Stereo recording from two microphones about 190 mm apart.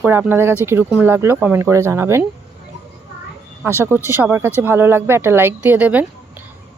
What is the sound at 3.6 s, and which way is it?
Speech, 15° right (ahead or behind).